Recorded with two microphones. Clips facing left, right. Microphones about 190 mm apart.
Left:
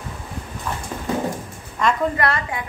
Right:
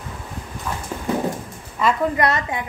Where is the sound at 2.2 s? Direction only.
20° right (ahead or behind).